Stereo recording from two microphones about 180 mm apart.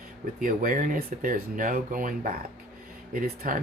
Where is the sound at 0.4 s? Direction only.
50° right (ahead or behind).